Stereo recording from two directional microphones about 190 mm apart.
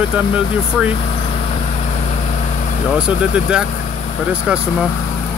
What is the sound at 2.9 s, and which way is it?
Speech, 5° right (ahead or behind).